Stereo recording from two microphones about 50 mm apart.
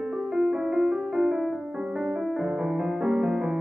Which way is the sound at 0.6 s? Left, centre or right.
Centre.